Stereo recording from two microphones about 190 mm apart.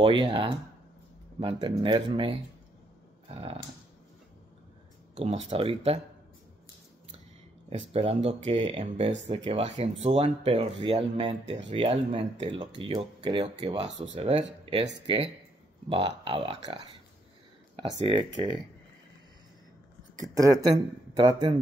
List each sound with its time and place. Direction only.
0.0 s speech: 25° right (ahead or behind)
5.1 s speech: 30° right (ahead or behind)
7.7 s speech: 30° right (ahead or behind)
15.9 s speech: 25° right (ahead or behind)
17.9 s speech: 30° right (ahead or behind)
20.2 s speech: 20° right (ahead or behind)